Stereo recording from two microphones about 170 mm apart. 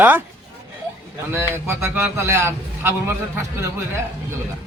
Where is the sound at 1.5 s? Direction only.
15° right (ahead or behind).